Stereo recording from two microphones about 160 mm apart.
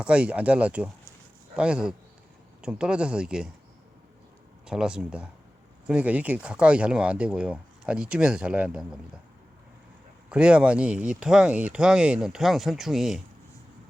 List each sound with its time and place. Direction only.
0.0 s speech: 5° right (ahead or behind)
4.6 s speech: 5° right (ahead or behind)
10.2 s speech: 5° right (ahead or behind)